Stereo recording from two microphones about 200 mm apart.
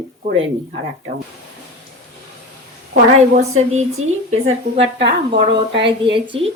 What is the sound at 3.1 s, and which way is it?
Speech, 35° right (ahead or behind).